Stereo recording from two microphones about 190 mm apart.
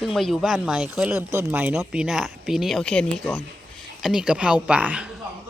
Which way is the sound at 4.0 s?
5° right (ahead or behind).